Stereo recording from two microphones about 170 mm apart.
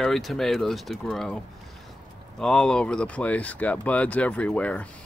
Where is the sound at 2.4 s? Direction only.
5° left (ahead or behind).